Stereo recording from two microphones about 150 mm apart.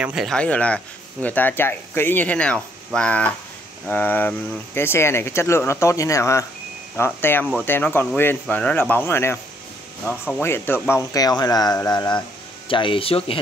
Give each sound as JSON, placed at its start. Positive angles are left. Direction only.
{"t": 0.0, "sound": "speech", "side_deg": -5}
{"t": 0.4, "sound": "speech", "side_deg": 10}
{"t": 10.4, "sound": "speech", "side_deg": 15}